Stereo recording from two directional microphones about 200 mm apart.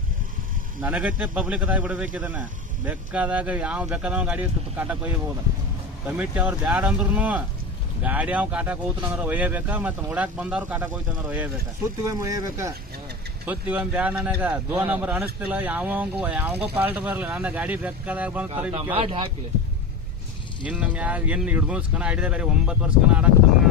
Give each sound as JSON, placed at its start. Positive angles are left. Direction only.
{"t": 0.8, "sound": "speech", "side_deg": -5}
{"t": 18.9, "sound": "speech", "side_deg": -25}
{"t": 20.7, "sound": "speech", "side_deg": -5}